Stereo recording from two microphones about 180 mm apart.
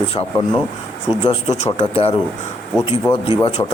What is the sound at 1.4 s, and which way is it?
Speech, 40° left (ahead or behind).